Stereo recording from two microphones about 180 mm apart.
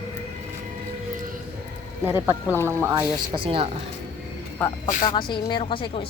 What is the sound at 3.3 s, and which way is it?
Speech, 30° right (ahead or behind).